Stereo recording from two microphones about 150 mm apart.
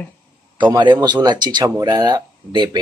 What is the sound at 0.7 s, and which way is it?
Speech, 25° right (ahead or behind).